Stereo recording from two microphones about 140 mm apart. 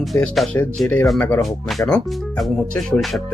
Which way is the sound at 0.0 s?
Centre (ahead or behind).